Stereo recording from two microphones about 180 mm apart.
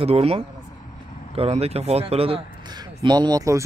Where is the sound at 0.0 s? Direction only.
35° right (ahead or behind).